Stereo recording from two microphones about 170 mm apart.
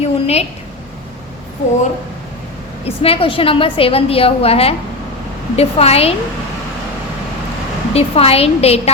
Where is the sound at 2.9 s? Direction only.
35° left (ahead or behind).